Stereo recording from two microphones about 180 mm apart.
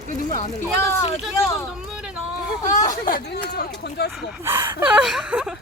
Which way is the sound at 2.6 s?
45° left (ahead or behind).